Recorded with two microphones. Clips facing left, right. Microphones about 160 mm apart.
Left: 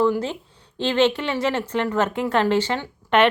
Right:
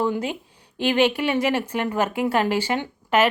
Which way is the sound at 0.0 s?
15° right (ahead or behind).